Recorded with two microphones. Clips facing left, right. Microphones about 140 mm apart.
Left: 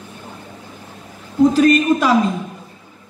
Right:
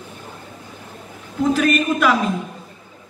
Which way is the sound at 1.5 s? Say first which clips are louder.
Left 5 dB; 35° left (ahead or behind).